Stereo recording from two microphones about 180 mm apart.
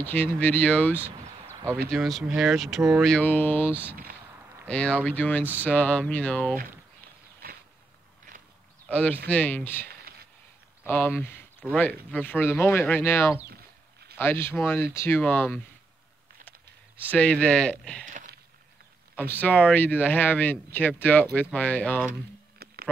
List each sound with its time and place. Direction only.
0.0 s speech: 10° left (ahead or behind)
8.8 s speech: 10° left (ahead or behind)
10.1 s a sound: 55° right (ahead or behind)
11.1 s speech: 10° left (ahead or behind)
13.5 s a sound: 60° right (ahead or behind)
14.1 s speech: 10° left (ahead or behind)
17.1 s speech: 5° left (ahead or behind)
18.1 s a sound: 55° right (ahead or behind)
19.1 s speech: 10° left (ahead or behind)